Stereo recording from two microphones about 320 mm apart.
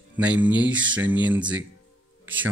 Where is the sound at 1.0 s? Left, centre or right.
Right.